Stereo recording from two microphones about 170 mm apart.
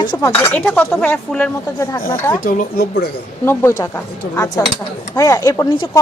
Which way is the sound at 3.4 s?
15° left (ahead or behind).